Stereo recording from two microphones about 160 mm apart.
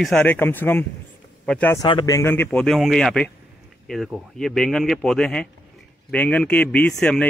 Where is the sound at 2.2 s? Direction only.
15° left (ahead or behind).